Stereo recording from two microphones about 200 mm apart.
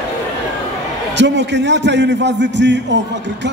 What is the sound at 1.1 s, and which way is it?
A man's voice, 60° right (ahead or behind).